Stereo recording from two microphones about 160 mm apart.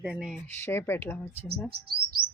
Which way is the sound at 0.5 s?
15° left (ahead or behind).